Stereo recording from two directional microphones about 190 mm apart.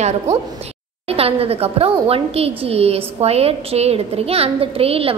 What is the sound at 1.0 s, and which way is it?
A woman's voice, 30° right (ahead or behind).